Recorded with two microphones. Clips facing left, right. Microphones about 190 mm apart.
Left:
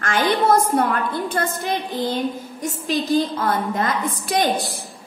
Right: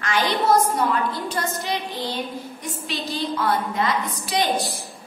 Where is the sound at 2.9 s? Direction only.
Centre (ahead or behind).